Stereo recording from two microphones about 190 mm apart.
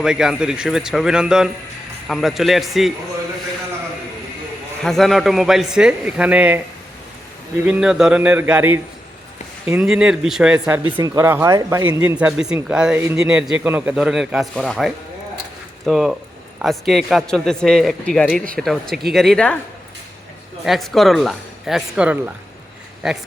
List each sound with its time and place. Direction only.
0.0 s a man's voice: 5° right (ahead or behind)
4.8 s a man's voice: centre (ahead or behind)
10.8 s a man's voice: 20° right (ahead or behind); by 19.5 s centre (ahead or behind)
20.7 s a man's voice: centre (ahead or behind)